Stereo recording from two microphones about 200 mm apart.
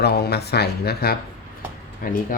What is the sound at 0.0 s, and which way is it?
Speech, 55° left (ahead or behind).